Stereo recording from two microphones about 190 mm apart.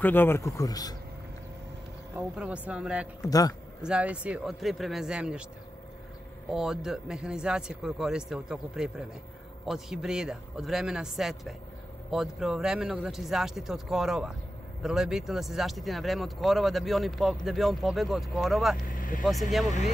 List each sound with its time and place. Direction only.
0.0 s a man's voice: 10° left (ahead or behind)
2.1 s speech: 5° right (ahead or behind)
3.3 s a man's voice: 20° left (ahead or behind)
3.8 s speech: 5° right (ahead or behind)
6.5 s speech: centre (ahead or behind)
18.9 s speech: 45° left (ahead or behind)